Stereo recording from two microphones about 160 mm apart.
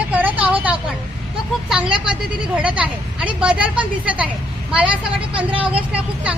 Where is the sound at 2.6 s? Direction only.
5° right (ahead or behind).